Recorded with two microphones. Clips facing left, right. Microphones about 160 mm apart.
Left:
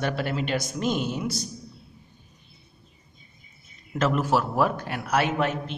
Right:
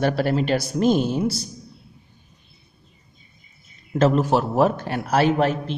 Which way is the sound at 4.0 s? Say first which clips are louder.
Right 5 dB; 30° right (ahead or behind).